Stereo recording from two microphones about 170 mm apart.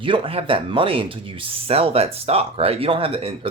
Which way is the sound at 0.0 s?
30° right (ahead or behind).